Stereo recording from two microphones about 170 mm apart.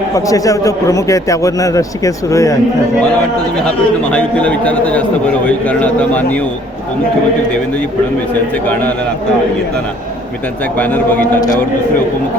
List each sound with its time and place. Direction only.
0.3 s a man's voice: 20° left (ahead or behind)
4.1 s a man's voice: 5° left (ahead or behind)
10.8 s a man's voice: 10° left (ahead or behind)